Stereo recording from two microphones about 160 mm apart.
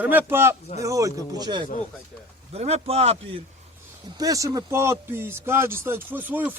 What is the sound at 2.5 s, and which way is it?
Speech, 40° right (ahead or behind).